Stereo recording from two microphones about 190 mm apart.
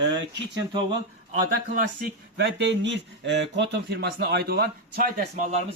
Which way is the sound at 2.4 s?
65° right (ahead or behind).